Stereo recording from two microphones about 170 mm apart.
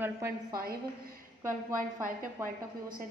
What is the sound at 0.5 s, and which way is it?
A woman's voice, 60° right (ahead or behind).